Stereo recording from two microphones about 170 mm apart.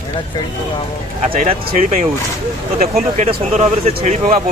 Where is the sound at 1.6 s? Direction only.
45° right (ahead or behind).